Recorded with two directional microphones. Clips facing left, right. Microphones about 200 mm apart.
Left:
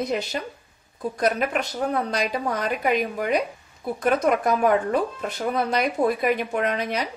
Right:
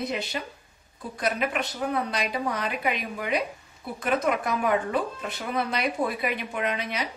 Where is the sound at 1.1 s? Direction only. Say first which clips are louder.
Left 4 dB; 45° left (ahead or behind).